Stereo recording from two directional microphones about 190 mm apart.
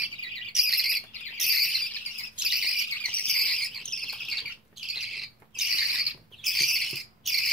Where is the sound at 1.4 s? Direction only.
Centre (ahead or behind).